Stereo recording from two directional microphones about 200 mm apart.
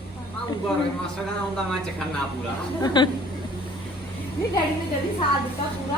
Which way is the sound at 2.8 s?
20° left (ahead or behind).